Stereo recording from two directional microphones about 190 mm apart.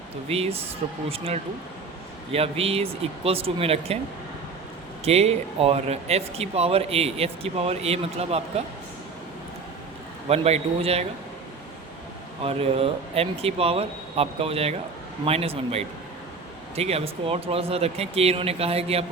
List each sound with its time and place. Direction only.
0.3 s speech: 30° right (ahead or behind)
5.0 s speech: 35° right (ahead or behind)
10.2 s speech: 35° right (ahead or behind)
12.4 s speech: 30° right (ahead or behind)